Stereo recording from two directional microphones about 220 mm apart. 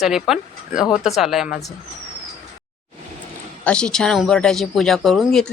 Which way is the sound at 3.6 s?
5° left (ahead or behind).